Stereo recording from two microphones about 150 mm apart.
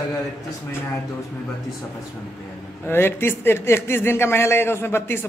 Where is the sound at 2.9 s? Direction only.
15° left (ahead or behind).